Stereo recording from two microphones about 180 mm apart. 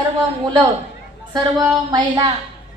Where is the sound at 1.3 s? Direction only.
20° right (ahead or behind).